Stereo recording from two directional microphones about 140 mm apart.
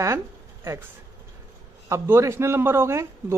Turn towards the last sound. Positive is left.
turn(degrees=-20)  # may be behind; listen again after turning